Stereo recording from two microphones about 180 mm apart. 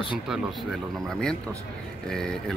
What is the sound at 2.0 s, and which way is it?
Speech, 5° left (ahead or behind).